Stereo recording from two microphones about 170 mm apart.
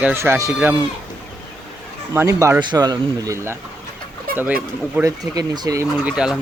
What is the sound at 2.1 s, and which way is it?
Speech, 15° right (ahead or behind).